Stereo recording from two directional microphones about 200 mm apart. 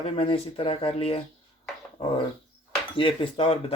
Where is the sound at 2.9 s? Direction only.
25° left (ahead or behind).